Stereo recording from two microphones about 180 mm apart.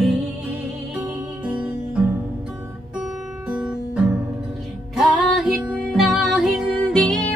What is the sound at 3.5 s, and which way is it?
Guitar, 5° right (ahead or behind).